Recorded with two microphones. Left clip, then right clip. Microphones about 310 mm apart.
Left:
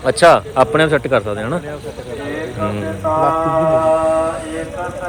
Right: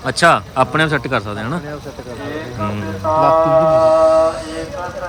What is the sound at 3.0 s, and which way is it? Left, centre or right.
Mantra, right.